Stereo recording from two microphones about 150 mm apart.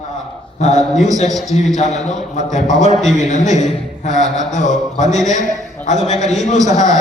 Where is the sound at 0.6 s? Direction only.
50° left (ahead or behind).